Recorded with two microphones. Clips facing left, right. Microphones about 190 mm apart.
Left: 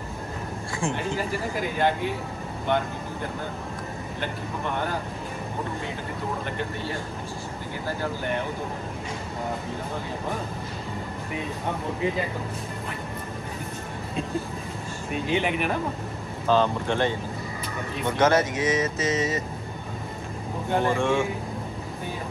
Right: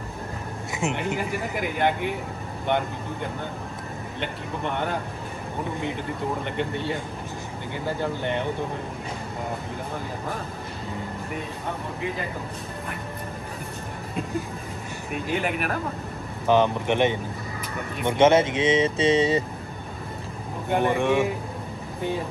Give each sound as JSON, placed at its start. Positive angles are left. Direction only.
{"t": 0.7, "sound": "speech", "side_deg": -20}
{"t": 4.2, "sound": "speech", "side_deg": -20}
{"t": 8.0, "sound": "speech", "side_deg": -20}
{"t": 15.3, "sound": "speech", "side_deg": 0}
{"t": 16.4, "sound": "speech", "side_deg": -20}
{"t": 20.7, "sound": "speech", "side_deg": -20}